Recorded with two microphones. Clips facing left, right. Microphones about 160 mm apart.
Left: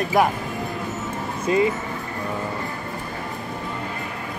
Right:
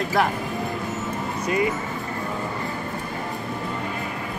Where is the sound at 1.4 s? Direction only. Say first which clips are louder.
Left 4 dB; 25° left (ahead or behind).